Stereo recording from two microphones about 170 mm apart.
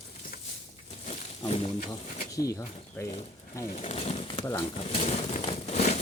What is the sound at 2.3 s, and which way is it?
Speech, 20° left (ahead or behind).